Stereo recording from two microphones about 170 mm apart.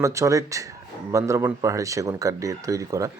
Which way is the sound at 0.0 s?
20° right (ahead or behind).